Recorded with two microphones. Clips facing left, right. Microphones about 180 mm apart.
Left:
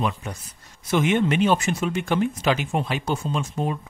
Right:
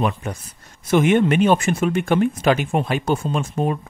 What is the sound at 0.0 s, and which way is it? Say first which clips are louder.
Speech: right 4 dB; 55° right (ahead or behind).